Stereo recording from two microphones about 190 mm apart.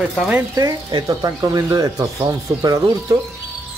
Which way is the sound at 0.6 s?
20° right (ahead or behind).